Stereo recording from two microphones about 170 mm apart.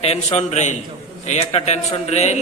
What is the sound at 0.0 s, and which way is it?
A man's voice, 40° left (ahead or behind).